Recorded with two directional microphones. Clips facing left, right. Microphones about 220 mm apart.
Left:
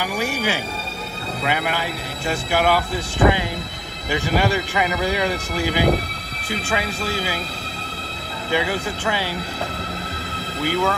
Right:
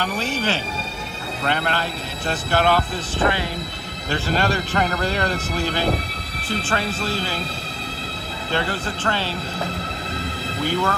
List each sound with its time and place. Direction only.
0.0 s speech: 10° left (ahead or behind)
8.5 s speech: 10° left (ahead or behind)
10.6 s speech: 10° left (ahead or behind)